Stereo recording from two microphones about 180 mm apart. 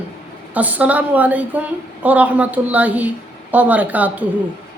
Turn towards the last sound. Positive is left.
turn(degrees=-10)  # may be behind; listen again after turning